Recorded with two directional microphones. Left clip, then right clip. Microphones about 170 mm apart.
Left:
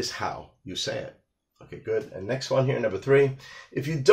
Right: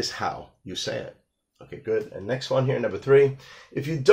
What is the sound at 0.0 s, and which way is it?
Speech, 30° right (ahead or behind).